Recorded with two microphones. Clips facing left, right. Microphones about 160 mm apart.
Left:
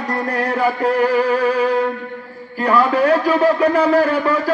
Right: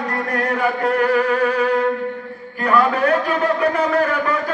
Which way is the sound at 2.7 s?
30° left (ahead or behind).